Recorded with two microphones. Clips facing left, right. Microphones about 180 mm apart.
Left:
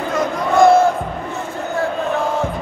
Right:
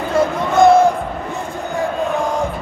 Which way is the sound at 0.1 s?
20° right (ahead or behind).